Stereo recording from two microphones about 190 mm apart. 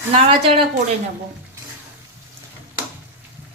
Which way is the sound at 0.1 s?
30° right (ahead or behind).